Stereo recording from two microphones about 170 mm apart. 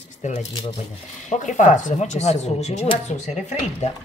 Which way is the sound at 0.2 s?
45° left (ahead or behind).